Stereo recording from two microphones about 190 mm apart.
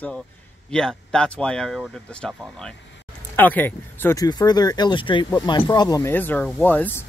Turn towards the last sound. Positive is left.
turn(degrees=10)  # may be behind; listen again after turning